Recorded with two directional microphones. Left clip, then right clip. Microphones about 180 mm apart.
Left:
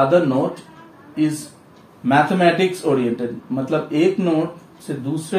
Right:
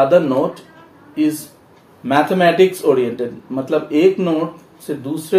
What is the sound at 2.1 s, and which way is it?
Speech, 50° right (ahead or behind).